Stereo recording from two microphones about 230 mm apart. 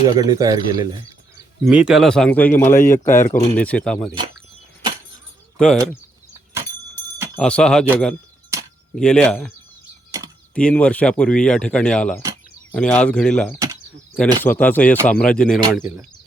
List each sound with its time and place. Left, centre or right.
0.0 s speech: centre
1.6 s speech: centre
5.5 s speech: centre
7.3 s speech: centre
9.0 s speech: centre
10.5 s speech: centre